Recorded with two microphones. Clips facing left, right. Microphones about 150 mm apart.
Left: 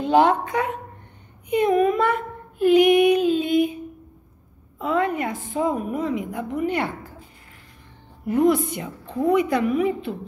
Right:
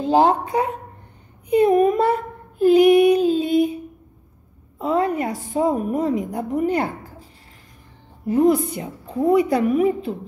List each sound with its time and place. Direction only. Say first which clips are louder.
0.0 s a woman's voice: right 1 dB; 35° right (ahead or behind)
4.7 s a woman's voice: right 2 dB; 40° right (ahead or behind)
8.3 s a woman's voice: right 2 dB; 35° right (ahead or behind)